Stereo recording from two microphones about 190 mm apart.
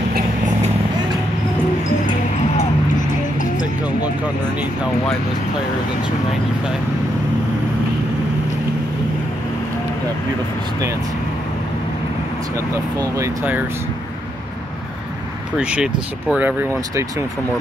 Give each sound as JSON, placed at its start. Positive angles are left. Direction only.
{"t": 2.5, "sound": "music", "side_deg": 40}
{"t": 13.1, "sound": "speech", "side_deg": -10}
{"t": 15.5, "sound": "speech", "side_deg": -5}